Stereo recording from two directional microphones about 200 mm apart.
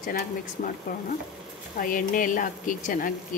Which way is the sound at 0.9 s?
45° left (ahead or behind).